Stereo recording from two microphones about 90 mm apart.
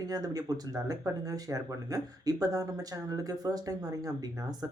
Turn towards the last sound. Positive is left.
turn(degrees=-45)  # may be behind; listen again after turning